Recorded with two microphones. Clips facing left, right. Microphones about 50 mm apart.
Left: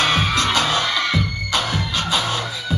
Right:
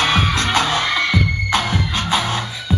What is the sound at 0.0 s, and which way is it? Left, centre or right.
Music, right.